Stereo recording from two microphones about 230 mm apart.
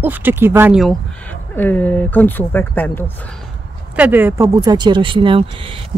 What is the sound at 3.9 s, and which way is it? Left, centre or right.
Speech, centre.